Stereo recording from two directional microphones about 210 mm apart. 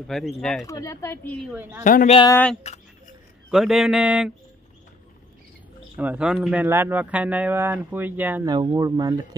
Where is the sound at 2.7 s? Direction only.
30° left (ahead or behind).